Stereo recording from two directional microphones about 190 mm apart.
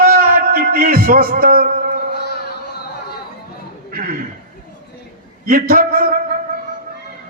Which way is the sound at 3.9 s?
50° right (ahead or behind).